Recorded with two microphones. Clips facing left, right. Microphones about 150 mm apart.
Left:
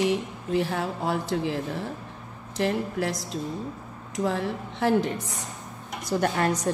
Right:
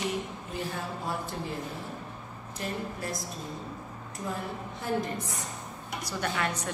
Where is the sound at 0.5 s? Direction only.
90° left.